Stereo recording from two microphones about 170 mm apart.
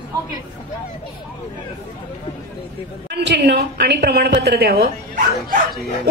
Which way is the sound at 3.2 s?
80° right.